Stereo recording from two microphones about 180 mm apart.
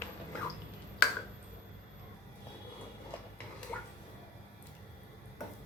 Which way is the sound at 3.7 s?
10° left (ahead or behind).